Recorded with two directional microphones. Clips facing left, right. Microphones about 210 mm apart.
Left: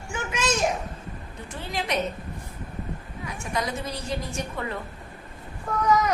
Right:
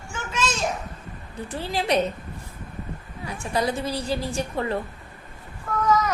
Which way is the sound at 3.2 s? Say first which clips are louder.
Right 4 dB; 35° right (ahead or behind).